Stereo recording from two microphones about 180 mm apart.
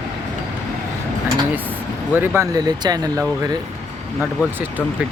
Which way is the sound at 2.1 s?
10° right (ahead or behind).